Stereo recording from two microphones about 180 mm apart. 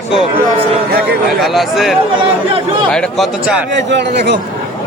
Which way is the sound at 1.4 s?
Centre (ahead or behind).